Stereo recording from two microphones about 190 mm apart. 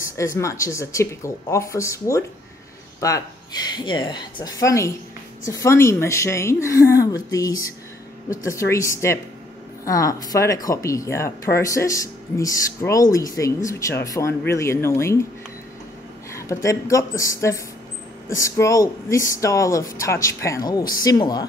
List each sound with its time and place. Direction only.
0.0 s speech: 15° left (ahead or behind)
16.3 s speech: 15° left (ahead or behind)